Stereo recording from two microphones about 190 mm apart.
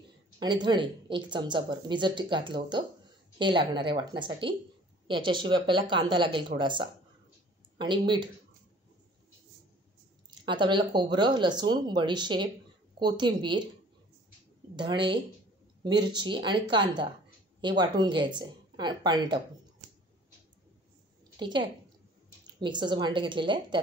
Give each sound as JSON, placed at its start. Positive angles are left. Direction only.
{"t": 0.4, "sound": "speech", "side_deg": -25}
{"t": 10.4, "sound": "speech", "side_deg": -25}
{"t": 14.8, "sound": "speech", "side_deg": -25}
{"t": 21.4, "sound": "a woman's voice", "side_deg": -25}